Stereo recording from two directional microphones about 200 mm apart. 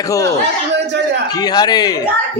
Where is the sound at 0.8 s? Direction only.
60° right (ahead or behind).